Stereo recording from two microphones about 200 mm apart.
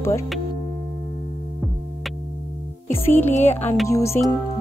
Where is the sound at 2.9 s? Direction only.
10° left (ahead or behind).